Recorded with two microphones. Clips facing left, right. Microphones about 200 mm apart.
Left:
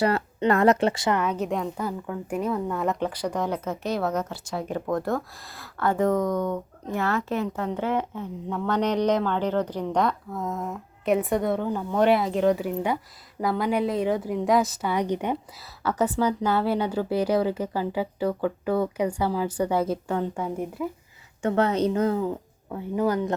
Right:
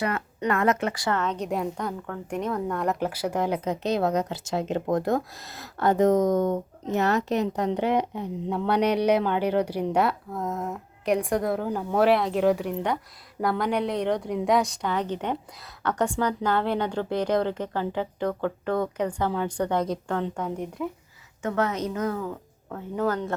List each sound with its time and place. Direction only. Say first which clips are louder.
0.0 s speech: left 5 dB; 35° left (ahead or behind)
1.2 s a woman's voice: left 1 dB; 10° left (ahead or behind); by 6.2 s 20° right (ahead or behind)
6.2 s speech: right 3 dB; 45° right (ahead or behind)
6.5 s a woman's voice: right 3 dB; 20° right (ahead or behind); by 20.9 s 5° left (ahead or behind)
21.4 s speech: left 4 dB; 30° left (ahead or behind)
22.7 s a woman's voice: left 2 dB; 10° left (ahead or behind)